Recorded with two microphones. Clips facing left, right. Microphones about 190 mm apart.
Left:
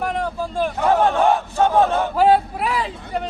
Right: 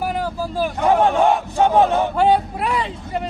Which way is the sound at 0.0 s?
5° right (ahead or behind).